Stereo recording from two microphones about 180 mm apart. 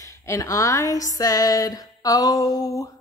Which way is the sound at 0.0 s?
15° left (ahead or behind).